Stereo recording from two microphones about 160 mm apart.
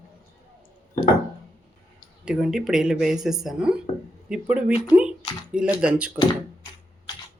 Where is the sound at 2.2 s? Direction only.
5° right (ahead or behind).